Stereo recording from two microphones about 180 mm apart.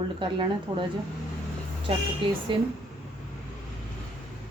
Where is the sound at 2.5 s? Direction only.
25° right (ahead or behind).